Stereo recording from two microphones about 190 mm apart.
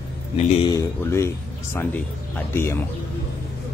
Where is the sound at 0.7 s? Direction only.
15° left (ahead or behind).